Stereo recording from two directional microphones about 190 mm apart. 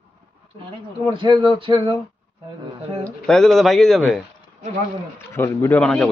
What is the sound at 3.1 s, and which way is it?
Speech, 5° left (ahead or behind).